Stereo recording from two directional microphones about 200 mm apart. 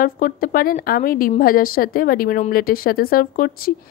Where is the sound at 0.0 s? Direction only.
45° left (ahead or behind).